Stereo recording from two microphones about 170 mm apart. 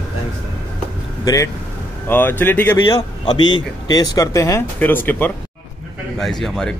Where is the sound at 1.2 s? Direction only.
20° left (ahead or behind).